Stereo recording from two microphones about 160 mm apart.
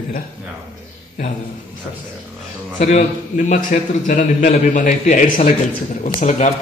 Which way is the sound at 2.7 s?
50° left (ahead or behind).